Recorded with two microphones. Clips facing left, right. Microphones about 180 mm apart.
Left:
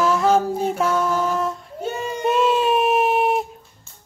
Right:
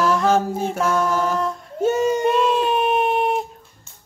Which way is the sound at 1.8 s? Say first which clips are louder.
Right 9 dB; 45° right (ahead or behind).